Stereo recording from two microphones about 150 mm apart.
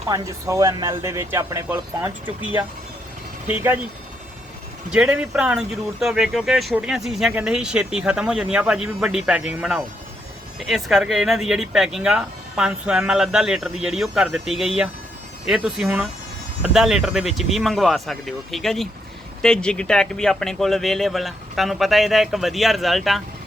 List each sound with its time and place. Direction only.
0.1 s speech: 20° right (ahead or behind)
4.9 s speech: 5° right (ahead or behind)